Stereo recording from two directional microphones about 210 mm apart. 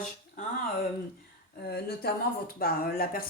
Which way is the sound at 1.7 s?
50° left (ahead or behind).